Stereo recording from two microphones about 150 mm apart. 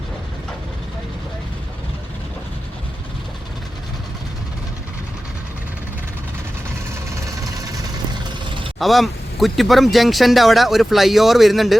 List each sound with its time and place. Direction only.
8.4 s vehicle: 35° right (ahead or behind)
8.8 s speech: centre (ahead or behind)